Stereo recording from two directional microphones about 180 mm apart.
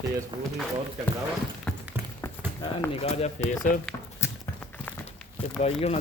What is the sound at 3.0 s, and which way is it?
Speech, 35° left (ahead or behind).